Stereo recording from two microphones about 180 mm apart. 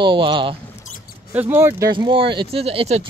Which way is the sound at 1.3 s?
10° right (ahead or behind).